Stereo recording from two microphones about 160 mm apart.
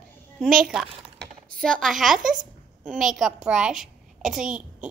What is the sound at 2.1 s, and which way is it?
Speech, 55° right (ahead or behind).